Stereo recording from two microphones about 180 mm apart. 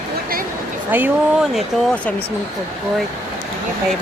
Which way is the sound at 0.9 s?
10° right (ahead or behind).